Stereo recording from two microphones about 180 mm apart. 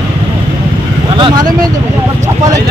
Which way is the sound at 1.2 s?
25° right (ahead or behind).